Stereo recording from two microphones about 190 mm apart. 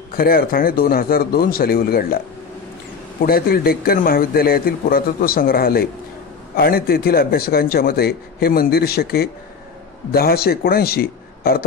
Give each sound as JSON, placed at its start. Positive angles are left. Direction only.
{"t": 0.1, "sound": "a man's voice", "side_deg": 50}
{"t": 3.2, "sound": "a man's voice", "side_deg": 50}